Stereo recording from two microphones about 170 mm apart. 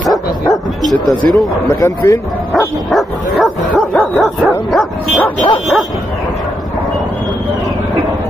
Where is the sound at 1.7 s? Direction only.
15° left (ahead or behind).